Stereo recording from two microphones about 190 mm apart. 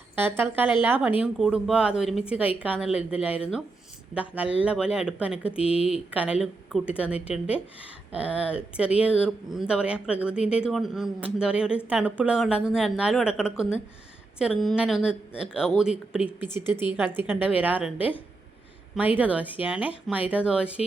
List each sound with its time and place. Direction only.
0.2 s speech: 10° right (ahead or behind)
5.5 s speech: 30° left (ahead or behind)
6.1 s speech: 5° right (ahead or behind)
18.9 s speech: 10° right (ahead or behind)